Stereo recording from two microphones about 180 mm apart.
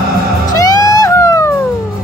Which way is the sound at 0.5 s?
20° left (ahead or behind).